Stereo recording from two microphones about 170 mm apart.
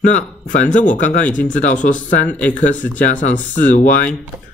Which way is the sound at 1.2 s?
10° left (ahead or behind).